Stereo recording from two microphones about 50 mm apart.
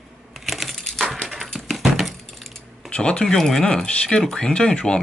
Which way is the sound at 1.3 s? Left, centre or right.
Centre.